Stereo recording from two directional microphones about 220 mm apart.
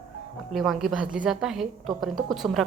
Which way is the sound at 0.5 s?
Centre (ahead or behind).